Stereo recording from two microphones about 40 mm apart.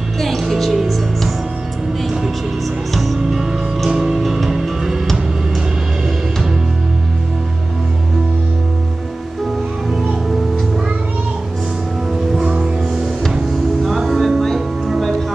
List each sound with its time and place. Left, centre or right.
0.4 s music: centre
2.9 s music: centre
12.4 s music: right
13.3 s music: centre